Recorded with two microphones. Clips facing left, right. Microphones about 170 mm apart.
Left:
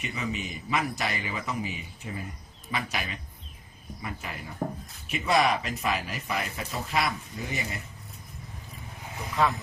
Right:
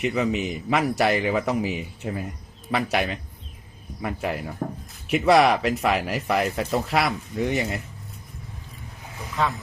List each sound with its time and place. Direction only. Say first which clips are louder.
0.0 s speech: right 10 dB; 70° right (ahead or behind)